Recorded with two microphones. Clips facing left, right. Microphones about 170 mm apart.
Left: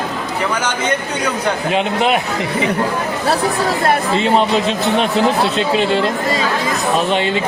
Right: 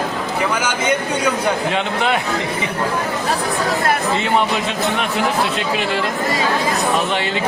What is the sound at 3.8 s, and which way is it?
Speech, 25° left (ahead or behind).